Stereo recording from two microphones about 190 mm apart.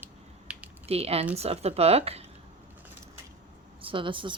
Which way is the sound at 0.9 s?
30° right (ahead or behind).